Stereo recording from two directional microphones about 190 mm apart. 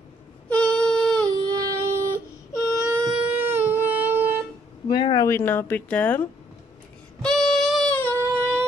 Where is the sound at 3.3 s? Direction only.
10° right (ahead or behind).